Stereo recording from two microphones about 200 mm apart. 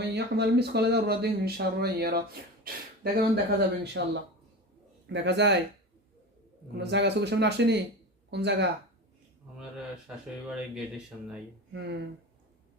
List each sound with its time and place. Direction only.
0.0 s speech: 55° right (ahead or behind)
4.0 s speech: 65° right (ahead or behind)
6.7 s speech: 60° right (ahead or behind)
10.1 s speech: 5° right (ahead or behind)
11.7 s speech: 60° right (ahead or behind)